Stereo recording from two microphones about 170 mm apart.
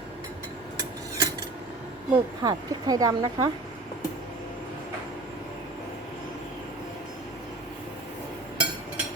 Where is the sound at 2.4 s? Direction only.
25° right (ahead or behind).